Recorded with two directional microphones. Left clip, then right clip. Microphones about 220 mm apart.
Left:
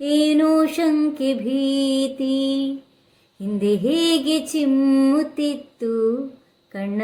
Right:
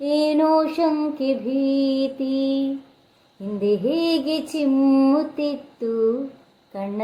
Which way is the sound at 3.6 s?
25° left (ahead or behind).